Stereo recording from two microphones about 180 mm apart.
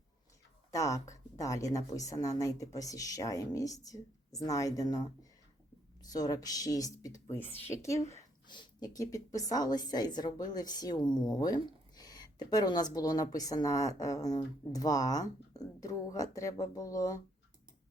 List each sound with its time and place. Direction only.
0.7 s a woman's voice: 20° left (ahead or behind)